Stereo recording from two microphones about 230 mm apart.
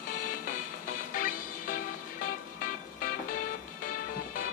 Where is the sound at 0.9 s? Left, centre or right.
Left.